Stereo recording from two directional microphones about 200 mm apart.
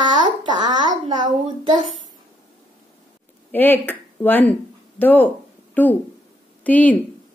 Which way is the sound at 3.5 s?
10° left (ahead or behind).